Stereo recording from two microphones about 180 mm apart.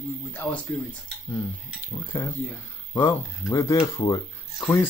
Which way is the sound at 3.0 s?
15° left (ahead or behind).